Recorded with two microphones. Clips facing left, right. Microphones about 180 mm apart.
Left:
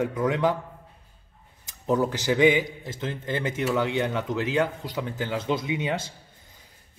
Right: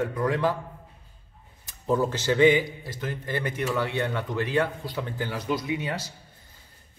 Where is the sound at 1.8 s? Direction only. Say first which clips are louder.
Left 1 dB; 15° left (ahead or behind).